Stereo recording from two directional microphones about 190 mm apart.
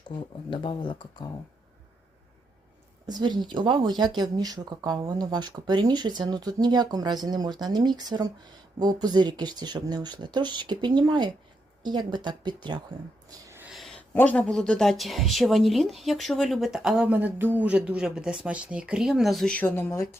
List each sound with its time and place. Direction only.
0.1 s speech: 25° left (ahead or behind)
3.1 s speech: 20° right (ahead or behind)
13.7 s a woman's voice: centre (ahead or behind)